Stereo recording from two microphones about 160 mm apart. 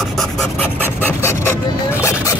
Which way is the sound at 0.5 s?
15° left (ahead or behind).